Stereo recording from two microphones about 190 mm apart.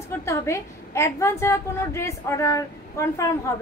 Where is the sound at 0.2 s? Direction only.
15° left (ahead or behind).